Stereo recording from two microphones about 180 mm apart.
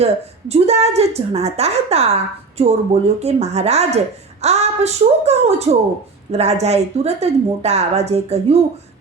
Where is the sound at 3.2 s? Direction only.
35° right (ahead or behind).